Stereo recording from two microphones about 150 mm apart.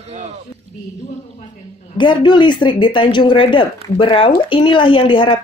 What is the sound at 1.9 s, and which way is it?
Speech, 30° left (ahead or behind).